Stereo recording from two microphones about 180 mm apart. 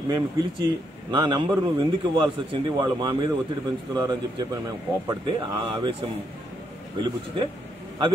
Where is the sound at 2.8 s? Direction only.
25° right (ahead or behind).